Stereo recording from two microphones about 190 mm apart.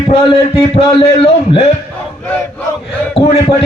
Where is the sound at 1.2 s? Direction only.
30° left (ahead or behind).